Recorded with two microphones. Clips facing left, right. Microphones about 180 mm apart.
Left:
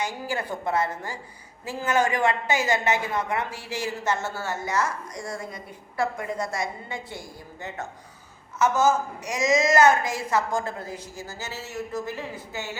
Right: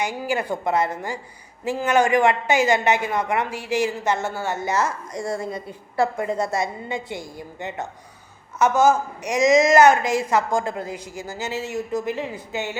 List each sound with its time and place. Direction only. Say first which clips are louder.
0.0 s a woman's voice: right 5 dB; 15° right (ahead or behind)